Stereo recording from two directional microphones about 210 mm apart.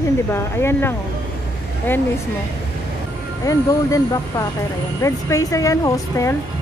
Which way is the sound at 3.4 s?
15° left (ahead or behind).